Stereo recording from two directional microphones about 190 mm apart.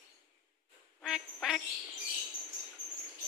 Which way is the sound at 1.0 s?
Centre (ahead or behind).